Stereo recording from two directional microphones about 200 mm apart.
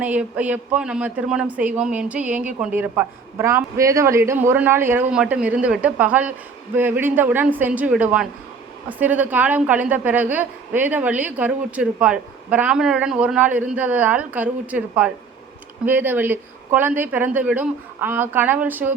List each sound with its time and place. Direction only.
0.0 s a woman's voice: 10° right (ahead or behind)